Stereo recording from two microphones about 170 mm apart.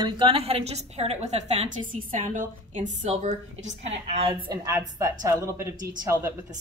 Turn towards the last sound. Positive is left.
turn(degrees=-15)  # may be behind; listen again after turning